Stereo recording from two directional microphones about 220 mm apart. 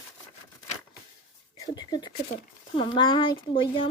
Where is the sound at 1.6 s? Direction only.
15° left (ahead or behind).